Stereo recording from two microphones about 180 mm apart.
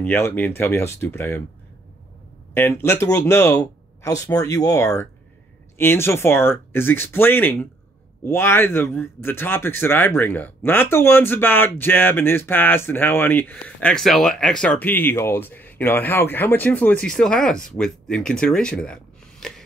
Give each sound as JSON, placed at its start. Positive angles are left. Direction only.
{"t": 0.0, "sound": "speech", "side_deg": 10}
{"t": 2.5, "sound": "speech", "side_deg": 15}
{"t": 19.4, "sound": "gasp", "side_deg": 5}